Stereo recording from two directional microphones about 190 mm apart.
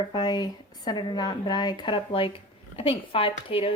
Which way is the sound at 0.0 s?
20° left (ahead or behind).